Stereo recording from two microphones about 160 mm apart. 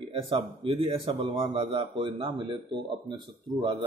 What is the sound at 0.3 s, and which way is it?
Speech, 35° right (ahead or behind).